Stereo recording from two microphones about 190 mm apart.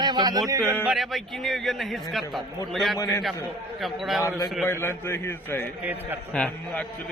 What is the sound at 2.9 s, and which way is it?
Speech, 15° left (ahead or behind).